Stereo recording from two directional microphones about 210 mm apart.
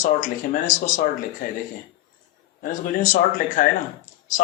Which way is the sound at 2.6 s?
40° left (ahead or behind).